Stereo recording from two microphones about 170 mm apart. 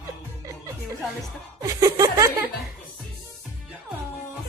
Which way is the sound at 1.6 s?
20° right (ahead or behind).